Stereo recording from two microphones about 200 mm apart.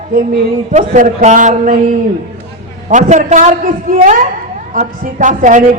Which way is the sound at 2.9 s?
35° right (ahead or behind).